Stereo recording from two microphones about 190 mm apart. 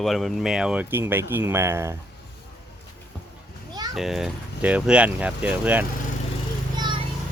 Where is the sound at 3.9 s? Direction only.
Centre (ahead or behind).